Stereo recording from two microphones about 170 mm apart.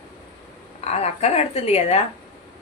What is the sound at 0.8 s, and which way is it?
Speech, 40° left (ahead or behind).